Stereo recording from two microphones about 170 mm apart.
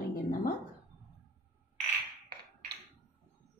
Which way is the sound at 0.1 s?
55° left (ahead or behind).